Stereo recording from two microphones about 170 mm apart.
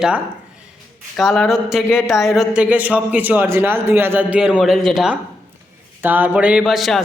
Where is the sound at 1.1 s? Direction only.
5° left (ahead or behind).